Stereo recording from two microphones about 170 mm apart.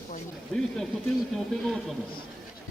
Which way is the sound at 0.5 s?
Centre (ahead or behind).